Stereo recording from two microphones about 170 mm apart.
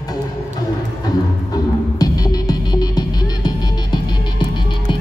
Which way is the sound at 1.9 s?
25° left (ahead or behind).